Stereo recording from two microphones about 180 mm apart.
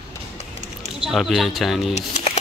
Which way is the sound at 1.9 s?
35° left (ahead or behind).